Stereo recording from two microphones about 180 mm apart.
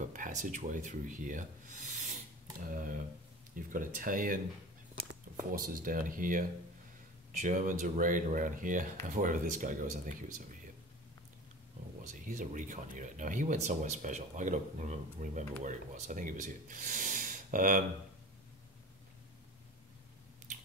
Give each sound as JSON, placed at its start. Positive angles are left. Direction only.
{"t": 0.0, "sound": "speech", "side_deg": -45}
{"t": 5.5, "sound": "speech", "side_deg": -50}
{"t": 12.1, "sound": "speech", "side_deg": -45}